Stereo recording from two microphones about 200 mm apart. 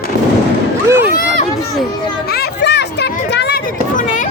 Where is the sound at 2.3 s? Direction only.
55° left (ahead or behind).